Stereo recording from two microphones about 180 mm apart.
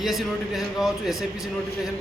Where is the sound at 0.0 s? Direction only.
Centre (ahead or behind).